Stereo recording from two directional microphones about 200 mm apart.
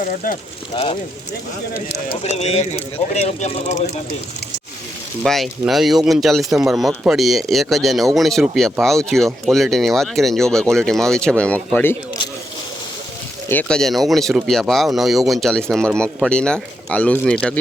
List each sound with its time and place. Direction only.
0.0 s speech: 40° left (ahead or behind)
0.7 s speech: 25° left (ahead or behind)
5.2 s speech: centre (ahead or behind)
13.5 s speech: 5° left (ahead or behind)